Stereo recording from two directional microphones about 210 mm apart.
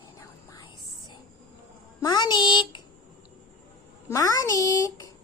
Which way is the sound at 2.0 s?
20° left (ahead or behind).